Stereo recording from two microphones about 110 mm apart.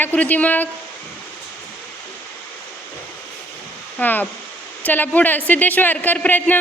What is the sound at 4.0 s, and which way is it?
Speech, 15° left (ahead or behind).